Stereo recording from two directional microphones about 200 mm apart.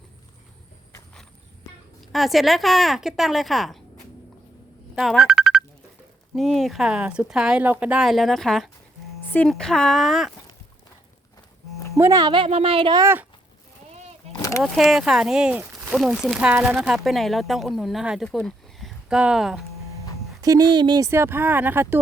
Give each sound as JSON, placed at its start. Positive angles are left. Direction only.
{"t": 2.1, "sound": "speech", "side_deg": 0}
{"t": 4.9, "sound": "a sound", "side_deg": 0}
{"t": 6.3, "sound": "speech", "side_deg": 0}
{"t": 11.9, "sound": "speech", "side_deg": -15}
{"t": 14.6, "sound": "speech", "side_deg": 0}
{"t": 20.4, "sound": "speech", "side_deg": -20}